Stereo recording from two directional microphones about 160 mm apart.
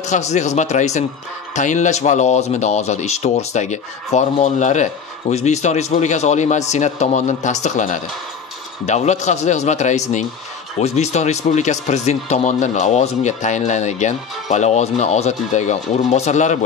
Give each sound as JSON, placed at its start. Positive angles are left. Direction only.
{"t": 0.1, "sound": "speech", "side_deg": 45}